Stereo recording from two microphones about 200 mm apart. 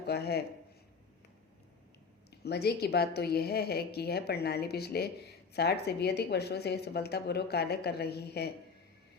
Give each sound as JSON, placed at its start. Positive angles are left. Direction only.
{"t": 0.0, "sound": "speech", "side_deg": 55}
{"t": 2.3, "sound": "speech", "side_deg": 55}